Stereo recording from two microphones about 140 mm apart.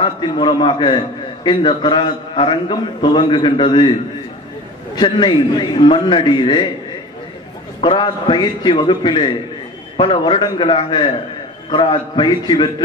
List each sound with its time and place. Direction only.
0.0 s a man's voice: 35° left (ahead or behind)
4.9 s a man's voice: 35° left (ahead or behind)
7.8 s a man's voice: 35° left (ahead or behind)